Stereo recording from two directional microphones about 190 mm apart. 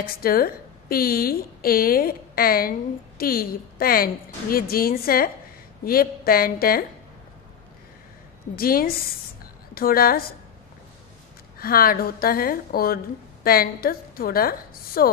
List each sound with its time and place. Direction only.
0.2 s a woman's voice: 50° left (ahead or behind)
8.5 s a woman's voice: 50° left (ahead or behind)
11.5 s a woman's voice: 50° left (ahead or behind)